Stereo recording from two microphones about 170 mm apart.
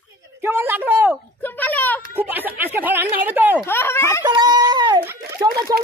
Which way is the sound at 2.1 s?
10° right (ahead or behind).